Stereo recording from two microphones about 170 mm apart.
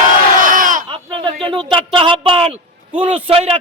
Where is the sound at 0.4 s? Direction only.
50° right (ahead or behind).